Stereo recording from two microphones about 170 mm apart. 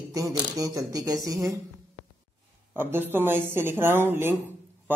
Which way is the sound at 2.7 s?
10° right (ahead or behind).